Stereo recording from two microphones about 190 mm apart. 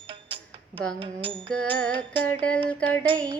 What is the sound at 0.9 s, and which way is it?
Music, 25° right (ahead or behind).